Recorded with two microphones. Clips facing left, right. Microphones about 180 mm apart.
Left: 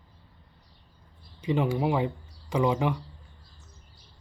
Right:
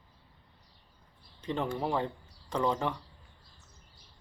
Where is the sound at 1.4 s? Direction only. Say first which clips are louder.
Left 6 dB; 10° left (ahead or behind).